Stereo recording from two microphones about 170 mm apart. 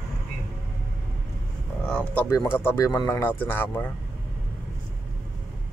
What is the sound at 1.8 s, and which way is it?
Speech, 5° left (ahead or behind).